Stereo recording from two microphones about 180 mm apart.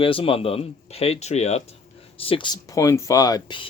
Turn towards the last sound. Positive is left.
turn(degrees=25)  # may be behind; listen again after turning